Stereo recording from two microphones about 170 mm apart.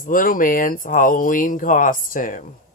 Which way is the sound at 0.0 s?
55° left (ahead or behind).